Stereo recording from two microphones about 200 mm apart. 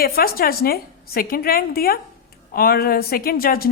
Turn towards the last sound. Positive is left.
turn(degrees=45)  # may be behind; listen again after turning